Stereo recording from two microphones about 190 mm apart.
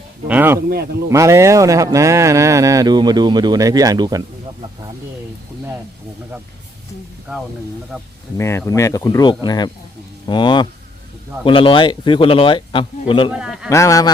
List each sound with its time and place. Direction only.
0.3 s speech: 10° right (ahead or behind)
7.3 s speech: 5° right (ahead or behind)
8.4 s speech: 15° left (ahead or behind)
13.3 s a man's voice: 5° right (ahead or behind)
13.7 s speech: 15° left (ahead or behind)